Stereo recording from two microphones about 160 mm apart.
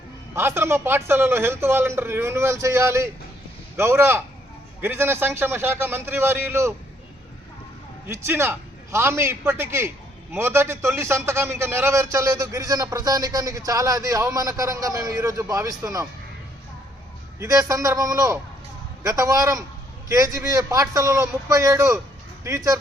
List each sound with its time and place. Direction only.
0.3 s a man's voice: 15° right (ahead or behind)
8.0 s a man's voice: 15° right (ahead or behind)
17.4 s a man's voice: 20° right (ahead or behind)